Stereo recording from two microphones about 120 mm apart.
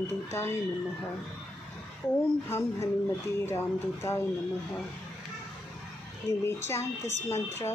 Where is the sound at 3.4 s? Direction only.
20° left (ahead or behind).